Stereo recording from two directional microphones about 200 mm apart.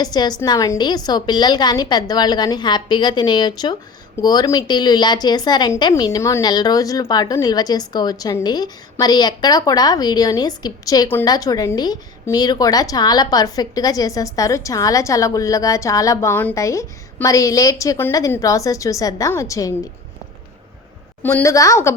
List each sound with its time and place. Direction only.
0.0 s a woman's voice: 20° left (ahead or behind)
21.2 s a woman's voice: 10° left (ahead or behind)